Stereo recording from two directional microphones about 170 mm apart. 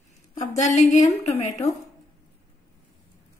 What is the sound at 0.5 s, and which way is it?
A woman's voice, 45° left (ahead or behind).